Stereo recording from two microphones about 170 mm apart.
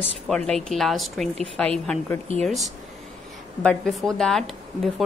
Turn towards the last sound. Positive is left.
turn(degrees=0)  # may be behind; listen again after turning